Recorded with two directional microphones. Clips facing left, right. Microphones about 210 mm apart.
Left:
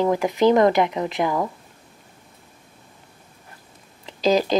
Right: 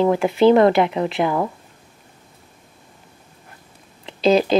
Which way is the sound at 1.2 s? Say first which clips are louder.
Right 2 dB; 20° right (ahead or behind).